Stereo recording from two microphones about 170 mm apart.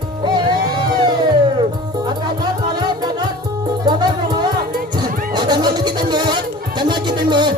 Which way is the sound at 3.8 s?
25° right (ahead or behind).